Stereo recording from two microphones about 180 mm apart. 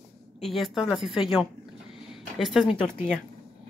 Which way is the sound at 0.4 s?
Centre (ahead or behind).